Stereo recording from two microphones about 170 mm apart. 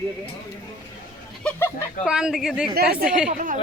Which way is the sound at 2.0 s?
5° right (ahead or behind).